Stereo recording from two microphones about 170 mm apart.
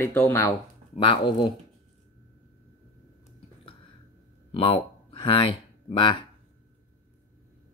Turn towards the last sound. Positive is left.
turn(degrees=30)  # may be behind; listen again after turning